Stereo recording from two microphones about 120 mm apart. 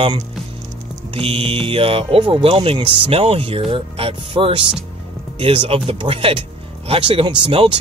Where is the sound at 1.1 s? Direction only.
50° right (ahead or behind).